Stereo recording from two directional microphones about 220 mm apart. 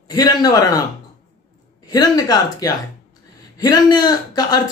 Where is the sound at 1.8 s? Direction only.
15° left (ahead or behind).